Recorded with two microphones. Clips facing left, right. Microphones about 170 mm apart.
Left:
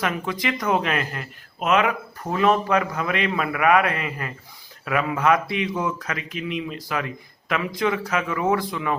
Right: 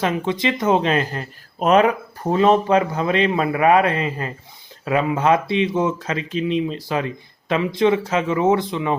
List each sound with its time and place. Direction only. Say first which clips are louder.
0.0 s speech: right 5 dB; 25° right (ahead or behind)